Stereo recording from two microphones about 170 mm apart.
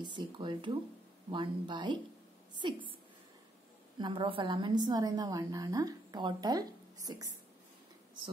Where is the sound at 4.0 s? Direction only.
30° right (ahead or behind).